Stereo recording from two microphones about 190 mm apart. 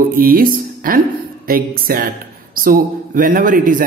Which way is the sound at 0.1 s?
50° right (ahead or behind).